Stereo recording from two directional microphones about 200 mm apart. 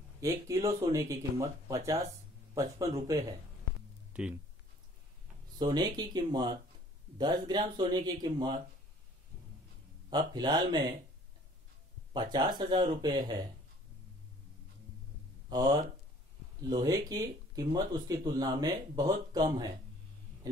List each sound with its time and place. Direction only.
0.2 s speech: 15° right (ahead or behind)
4.1 s speech: 5° right (ahead or behind)
5.6 s speech: 20° right (ahead or behind)
10.0 s speech: 20° right (ahead or behind)
12.1 s speech: 20° right (ahead or behind)
15.5 s speech: 20° right (ahead or behind)